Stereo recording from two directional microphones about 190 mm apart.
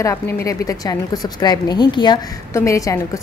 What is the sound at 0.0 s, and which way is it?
A woman's voice, 15° left (ahead or behind).